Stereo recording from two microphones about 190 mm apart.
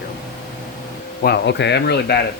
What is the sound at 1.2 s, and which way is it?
Speech, 65° left (ahead or behind).